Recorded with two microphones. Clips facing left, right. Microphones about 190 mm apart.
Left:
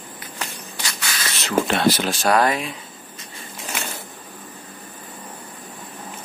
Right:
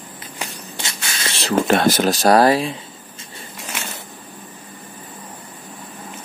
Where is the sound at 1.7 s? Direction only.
45° right (ahead or behind).